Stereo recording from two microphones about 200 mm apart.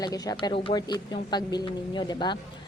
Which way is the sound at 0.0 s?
20° left (ahead or behind).